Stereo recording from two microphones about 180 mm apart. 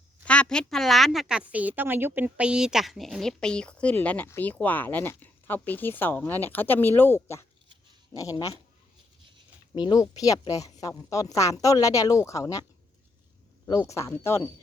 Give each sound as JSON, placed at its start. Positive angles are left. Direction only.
{"t": 0.3, "sound": "a woman's voice", "side_deg": 5}
{"t": 9.7, "sound": "speech", "side_deg": 20}
{"t": 13.7, "sound": "a woman's voice", "side_deg": 15}